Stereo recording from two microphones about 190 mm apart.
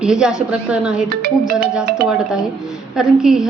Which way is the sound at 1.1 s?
55° right (ahead or behind).